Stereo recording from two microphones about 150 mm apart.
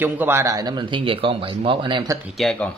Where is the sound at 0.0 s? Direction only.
15° right (ahead or behind); by 2.1 s 30° right (ahead or behind).